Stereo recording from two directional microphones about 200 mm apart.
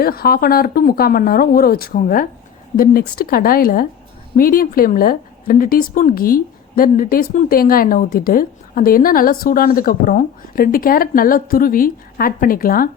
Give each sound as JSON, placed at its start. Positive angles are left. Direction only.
{"t": 0.0, "sound": "a woman's voice", "side_deg": 50}